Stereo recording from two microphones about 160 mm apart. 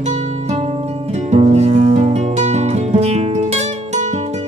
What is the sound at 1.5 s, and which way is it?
Music, 45° right (ahead or behind).